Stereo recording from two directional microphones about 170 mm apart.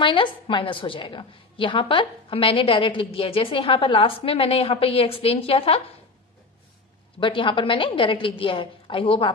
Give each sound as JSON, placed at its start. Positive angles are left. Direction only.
{"t": 0.0, "sound": "a woman's voice", "side_deg": 30}
{"t": 7.2, "sound": "a woman's voice", "side_deg": 30}